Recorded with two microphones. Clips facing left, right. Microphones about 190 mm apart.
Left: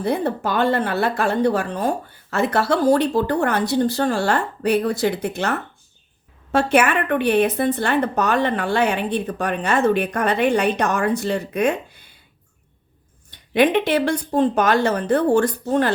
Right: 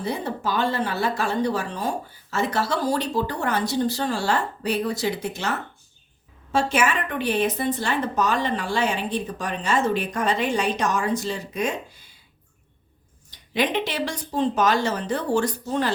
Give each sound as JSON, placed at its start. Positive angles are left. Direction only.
{"t": 0.0, "sound": "speech", "side_deg": 60}
{"t": 13.3, "sound": "speech", "side_deg": 55}